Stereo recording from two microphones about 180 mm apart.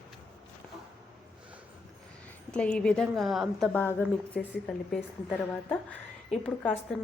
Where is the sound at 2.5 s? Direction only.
5° left (ahead or behind).